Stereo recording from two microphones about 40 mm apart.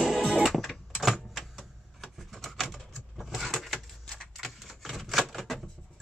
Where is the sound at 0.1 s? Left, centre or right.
Centre.